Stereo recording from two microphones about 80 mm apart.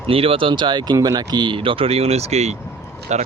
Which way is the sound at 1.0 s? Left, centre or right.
Right.